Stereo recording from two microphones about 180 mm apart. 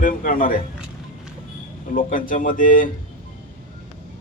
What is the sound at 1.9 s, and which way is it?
Speech, 50° left (ahead or behind).